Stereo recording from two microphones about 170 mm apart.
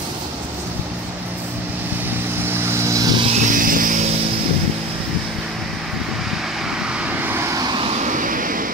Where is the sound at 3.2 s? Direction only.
45° right (ahead or behind).